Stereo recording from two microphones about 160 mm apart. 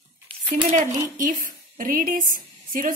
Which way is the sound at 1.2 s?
55° right (ahead or behind).